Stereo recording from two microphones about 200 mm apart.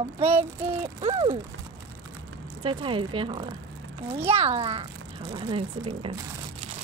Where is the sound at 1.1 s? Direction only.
15° right (ahead or behind).